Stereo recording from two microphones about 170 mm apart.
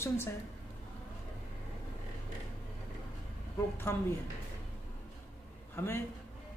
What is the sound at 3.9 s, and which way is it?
Speech, 15° left (ahead or behind).